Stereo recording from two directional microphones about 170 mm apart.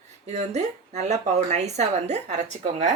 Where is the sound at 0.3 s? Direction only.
40° right (ahead or behind).